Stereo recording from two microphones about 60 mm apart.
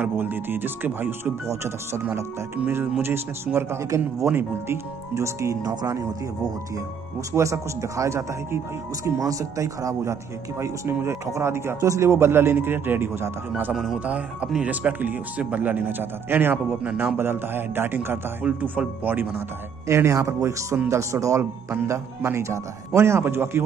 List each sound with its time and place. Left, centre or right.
0.0 s speech: right
1.2 s speech: right
3.0 s speech: right
5.1 s speech: right
9.2 s speech: right
10.9 s speech: right
13.9 s speech: right
18.4 s speech: right
19.0 s speech: right
19.9 s speech: right
21.4 s speech: right